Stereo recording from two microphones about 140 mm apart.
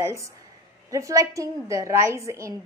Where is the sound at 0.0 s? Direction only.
20° right (ahead or behind).